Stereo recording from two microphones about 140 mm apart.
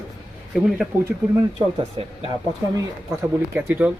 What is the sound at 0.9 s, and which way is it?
Speech, 15° right (ahead or behind).